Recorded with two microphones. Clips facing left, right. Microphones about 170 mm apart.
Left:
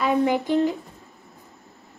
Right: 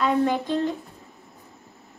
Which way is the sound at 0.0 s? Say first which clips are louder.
Left 1 dB; 10° left (ahead or behind).